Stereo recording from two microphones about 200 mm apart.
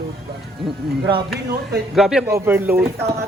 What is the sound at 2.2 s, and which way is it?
Speech, 15° right (ahead or behind).